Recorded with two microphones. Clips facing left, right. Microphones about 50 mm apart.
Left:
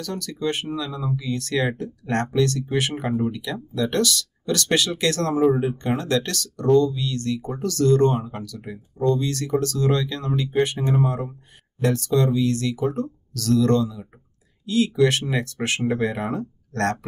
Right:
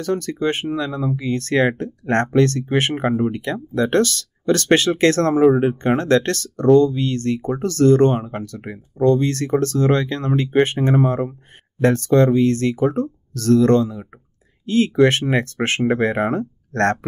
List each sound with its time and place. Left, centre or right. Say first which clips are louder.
0.0 s speech: right 6 dB; right